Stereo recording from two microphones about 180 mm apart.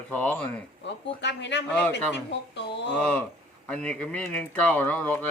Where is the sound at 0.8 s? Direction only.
75° left (ahead or behind).